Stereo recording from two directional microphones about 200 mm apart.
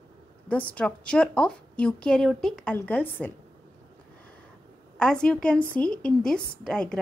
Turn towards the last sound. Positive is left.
turn(degrees=5)  # may be behind; listen again after turning